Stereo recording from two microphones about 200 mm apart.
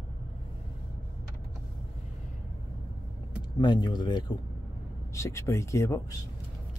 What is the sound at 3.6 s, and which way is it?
Speech, 20° left (ahead or behind).